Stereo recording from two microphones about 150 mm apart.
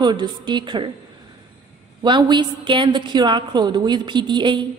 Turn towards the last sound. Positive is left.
turn(degrees=-30)  # may be behind; listen again after turning